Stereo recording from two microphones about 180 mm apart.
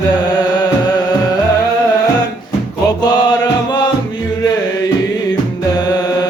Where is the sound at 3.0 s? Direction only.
25° left (ahead or behind).